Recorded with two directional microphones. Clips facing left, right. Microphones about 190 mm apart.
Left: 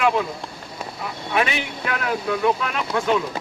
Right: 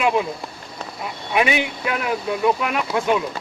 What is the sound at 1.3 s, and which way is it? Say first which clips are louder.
Speech: right 2 dB; 15° right (ahead or behind).